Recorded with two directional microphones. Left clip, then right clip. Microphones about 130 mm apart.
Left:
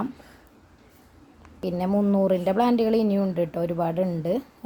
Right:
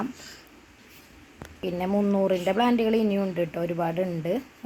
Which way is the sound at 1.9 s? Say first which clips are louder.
Left 2 dB; 25° left (ahead or behind).